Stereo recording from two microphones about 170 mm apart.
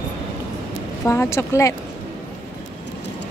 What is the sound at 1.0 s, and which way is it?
Speech, 15° left (ahead or behind).